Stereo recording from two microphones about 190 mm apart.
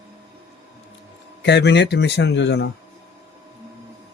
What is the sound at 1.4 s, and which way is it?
Speech, 65° left (ahead or behind).